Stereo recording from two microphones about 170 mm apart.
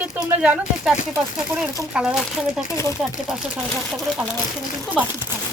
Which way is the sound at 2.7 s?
20° left (ahead or behind).